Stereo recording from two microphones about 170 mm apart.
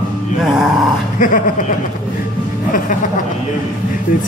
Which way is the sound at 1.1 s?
50° left (ahead or behind).